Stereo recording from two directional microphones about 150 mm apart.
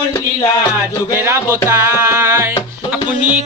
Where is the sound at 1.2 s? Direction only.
15° right (ahead or behind).